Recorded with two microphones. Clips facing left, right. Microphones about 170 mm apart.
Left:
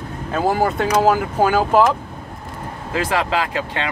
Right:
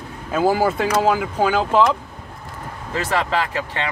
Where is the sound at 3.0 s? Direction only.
10° left (ahead or behind).